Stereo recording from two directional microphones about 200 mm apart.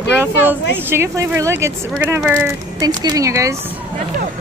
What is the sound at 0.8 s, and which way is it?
Speech, 15° right (ahead or behind).